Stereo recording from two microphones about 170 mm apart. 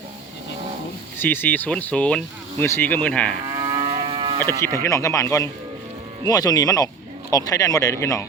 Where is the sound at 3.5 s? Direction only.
30° right (ahead or behind).